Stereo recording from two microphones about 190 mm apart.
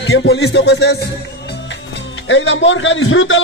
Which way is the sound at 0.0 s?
65° left (ahead or behind).